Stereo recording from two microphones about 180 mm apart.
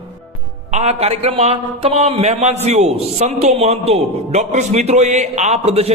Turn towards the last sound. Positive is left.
turn(degrees=-35)  # may be behind; listen again after turning